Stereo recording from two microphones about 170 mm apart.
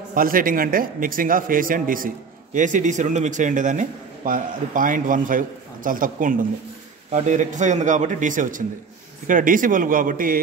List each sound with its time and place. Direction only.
0.1 s a man's voice: 55° right (ahead or behind)